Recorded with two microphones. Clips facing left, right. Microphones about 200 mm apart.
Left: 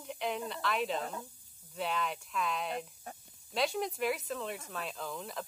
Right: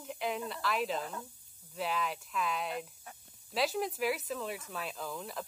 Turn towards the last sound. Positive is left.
turn(degrees=0)  # may be behind; listen again after turning